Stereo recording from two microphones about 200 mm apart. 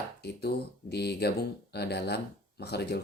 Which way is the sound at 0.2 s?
55° left (ahead or behind).